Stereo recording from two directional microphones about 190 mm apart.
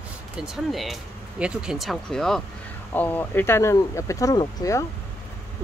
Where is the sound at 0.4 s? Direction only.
Centre (ahead or behind); by 4.8 s 20° left (ahead or behind).